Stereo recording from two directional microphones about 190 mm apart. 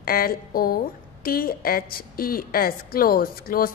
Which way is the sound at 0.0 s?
50° left (ahead or behind).